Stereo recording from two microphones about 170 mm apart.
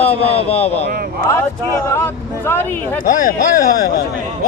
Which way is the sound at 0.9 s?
65° right (ahead or behind).